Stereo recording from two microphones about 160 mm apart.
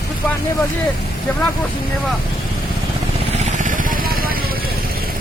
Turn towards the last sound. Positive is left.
turn(degrees=-65)  # may be behind; listen again after turning